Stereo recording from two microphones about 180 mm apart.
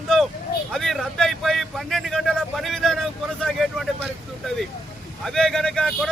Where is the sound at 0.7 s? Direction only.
Centre (ahead or behind).